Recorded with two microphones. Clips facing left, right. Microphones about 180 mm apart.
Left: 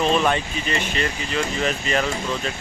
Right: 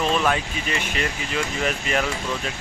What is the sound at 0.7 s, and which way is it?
Speech, 10° right (ahead or behind).